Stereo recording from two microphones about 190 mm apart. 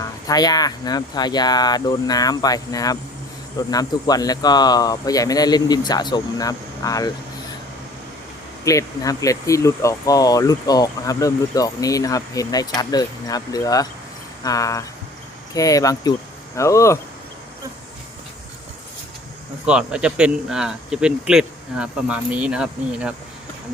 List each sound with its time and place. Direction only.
0.0 s speech: 20° left (ahead or behind)
8.6 s speech: 15° left (ahead or behind)
19.6 s speech: 5° right (ahead or behind)